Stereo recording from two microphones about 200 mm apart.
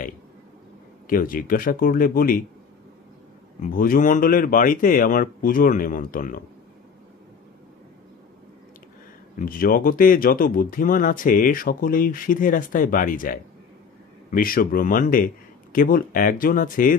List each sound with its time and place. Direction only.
1.0 s speech: 45° left (ahead or behind)
3.6 s speech: 45° left (ahead or behind)
9.4 s speech: 45° left (ahead or behind)